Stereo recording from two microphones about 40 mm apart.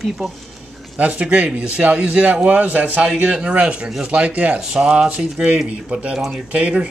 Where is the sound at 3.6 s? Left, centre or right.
Right.